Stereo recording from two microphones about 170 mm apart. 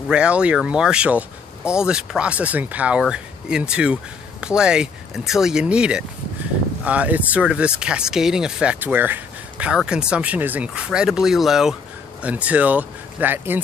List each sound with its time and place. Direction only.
0.1 s speech: 5° right (ahead or behind)